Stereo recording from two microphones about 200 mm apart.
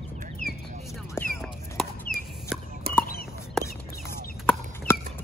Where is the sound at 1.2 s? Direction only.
10° left (ahead or behind).